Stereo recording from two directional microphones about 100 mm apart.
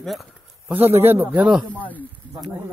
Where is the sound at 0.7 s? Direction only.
20° right (ahead or behind).